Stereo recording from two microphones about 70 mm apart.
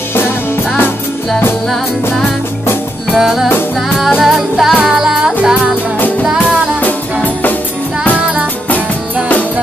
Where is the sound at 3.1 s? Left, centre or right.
Centre.